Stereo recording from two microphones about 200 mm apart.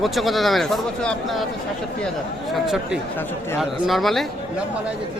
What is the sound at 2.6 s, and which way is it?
Speech, 5° right (ahead or behind).